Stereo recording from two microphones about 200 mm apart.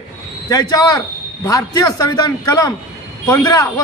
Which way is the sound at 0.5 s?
20° left (ahead or behind).